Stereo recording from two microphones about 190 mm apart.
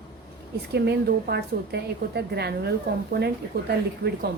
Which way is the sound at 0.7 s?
60° right (ahead or behind).